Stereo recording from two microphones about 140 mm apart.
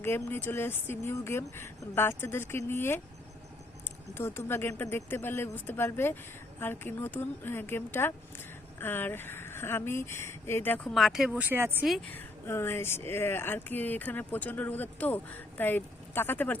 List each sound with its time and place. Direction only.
0.0 s speech: 15° left (ahead or behind)
4.1 s speech: 15° left (ahead or behind)
10.9 s speech: centre (ahead or behind)
12.1 s speech: 15° left (ahead or behind)